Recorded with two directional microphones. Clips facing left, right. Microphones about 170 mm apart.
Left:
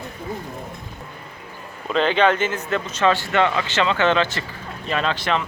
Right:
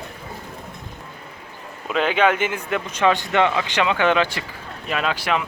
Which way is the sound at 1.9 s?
10° right (ahead or behind).